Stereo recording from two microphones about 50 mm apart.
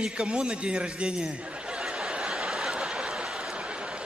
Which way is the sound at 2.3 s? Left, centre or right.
Centre.